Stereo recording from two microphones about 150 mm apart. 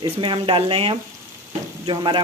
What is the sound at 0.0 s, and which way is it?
Speech, 35° right (ahead or behind).